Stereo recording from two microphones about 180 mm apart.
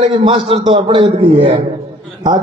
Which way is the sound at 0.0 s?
35° right (ahead or behind).